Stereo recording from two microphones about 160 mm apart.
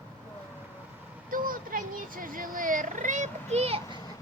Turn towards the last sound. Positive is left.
turn(degrees=-40)  # may be behind; listen again after turning